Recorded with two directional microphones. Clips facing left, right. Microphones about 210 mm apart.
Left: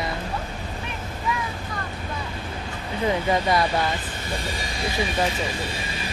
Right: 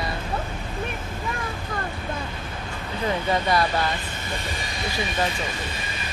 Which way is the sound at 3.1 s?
20° left (ahead or behind).